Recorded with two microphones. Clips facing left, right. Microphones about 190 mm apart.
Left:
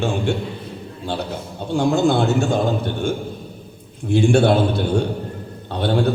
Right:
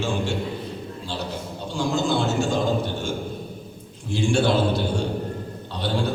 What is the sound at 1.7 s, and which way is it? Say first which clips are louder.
Speech: left 6 dB; 60° left (ahead or behind).